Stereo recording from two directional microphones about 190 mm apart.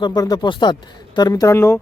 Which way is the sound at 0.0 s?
20° left (ahead or behind).